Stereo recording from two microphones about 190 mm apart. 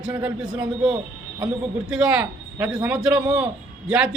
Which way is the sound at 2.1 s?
5° right (ahead or behind).